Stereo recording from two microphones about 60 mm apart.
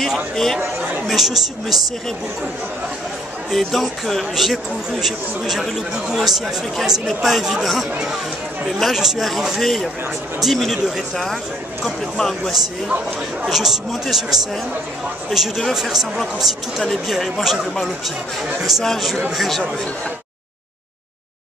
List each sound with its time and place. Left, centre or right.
1.0 s speech: centre
3.4 s speech: centre